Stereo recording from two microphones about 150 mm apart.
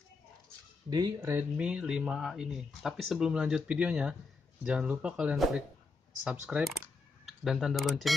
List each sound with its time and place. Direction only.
0.8 s speech: 25° right (ahead or behind)
1.6 s speech: 5° right (ahead or behind)